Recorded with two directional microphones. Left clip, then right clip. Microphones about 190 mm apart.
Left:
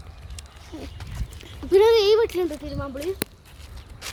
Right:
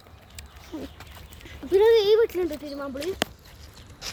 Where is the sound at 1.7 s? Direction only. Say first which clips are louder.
Left 2 dB; 45° left (ahead or behind).